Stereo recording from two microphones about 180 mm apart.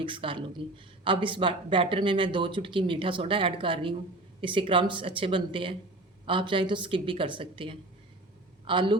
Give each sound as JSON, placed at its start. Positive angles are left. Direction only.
{"t": 0.0, "sound": "speech", "side_deg": -30}